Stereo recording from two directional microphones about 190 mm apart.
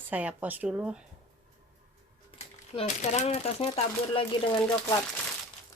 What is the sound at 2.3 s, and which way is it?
Speech, 35° left (ahead or behind).